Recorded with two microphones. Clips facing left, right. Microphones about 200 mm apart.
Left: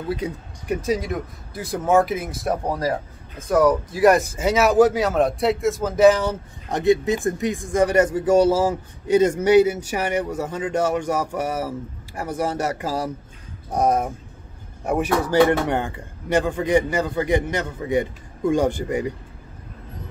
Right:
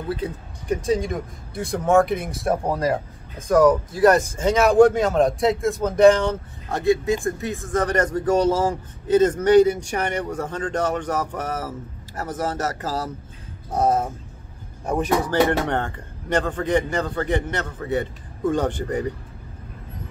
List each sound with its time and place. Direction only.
0.1 s speech: 10° left (ahead or behind)
3.9 s speech: 10° left (ahead or behind)
6.7 s speech: 20° left (ahead or behind)